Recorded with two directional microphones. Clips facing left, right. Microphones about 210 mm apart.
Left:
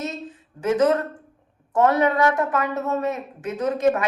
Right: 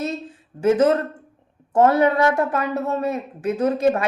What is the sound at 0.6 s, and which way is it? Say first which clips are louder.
A woman's voice: right 3 dB; 30° right (ahead or behind).